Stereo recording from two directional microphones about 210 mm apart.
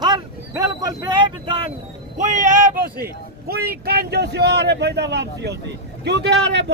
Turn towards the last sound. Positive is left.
turn(degrees=-55)  # may be behind; listen again after turning